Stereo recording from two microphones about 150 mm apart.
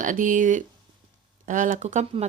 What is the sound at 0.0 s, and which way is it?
Speech, 60° right (ahead or behind).